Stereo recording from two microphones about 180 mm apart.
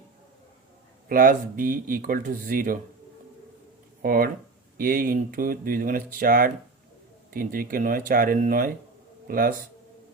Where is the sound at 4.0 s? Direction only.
55° right (ahead or behind).